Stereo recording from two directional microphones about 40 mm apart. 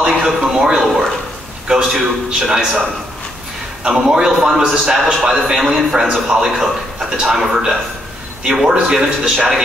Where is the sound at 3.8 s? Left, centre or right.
Centre.